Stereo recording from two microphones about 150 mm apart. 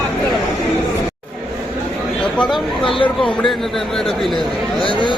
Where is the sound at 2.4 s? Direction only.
Centre (ahead or behind).